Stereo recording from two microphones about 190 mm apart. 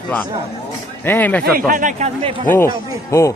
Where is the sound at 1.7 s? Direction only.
40° right (ahead or behind).